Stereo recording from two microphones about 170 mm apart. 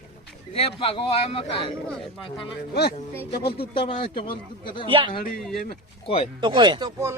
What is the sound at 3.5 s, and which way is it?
Speech, 30° left (ahead or behind).